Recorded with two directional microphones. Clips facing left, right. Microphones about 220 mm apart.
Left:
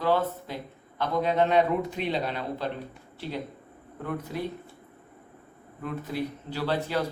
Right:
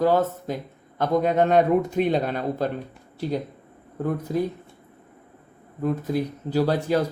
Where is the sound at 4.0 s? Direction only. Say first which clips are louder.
Right 8 dB; 40° right (ahead or behind).